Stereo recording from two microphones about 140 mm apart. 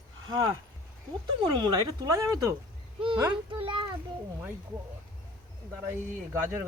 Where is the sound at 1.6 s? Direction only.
35° right (ahead or behind).